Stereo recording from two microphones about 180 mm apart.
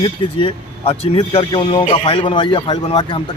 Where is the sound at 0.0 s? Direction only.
25° left (ahead or behind).